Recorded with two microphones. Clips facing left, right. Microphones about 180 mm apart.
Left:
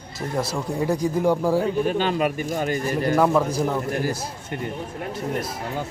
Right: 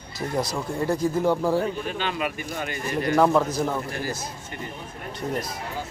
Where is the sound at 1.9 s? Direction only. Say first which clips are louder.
Left 6 dB; 45° left (ahead or behind).